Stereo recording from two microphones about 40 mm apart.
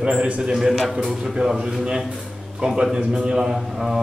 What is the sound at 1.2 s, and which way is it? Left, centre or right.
A man's voice, centre.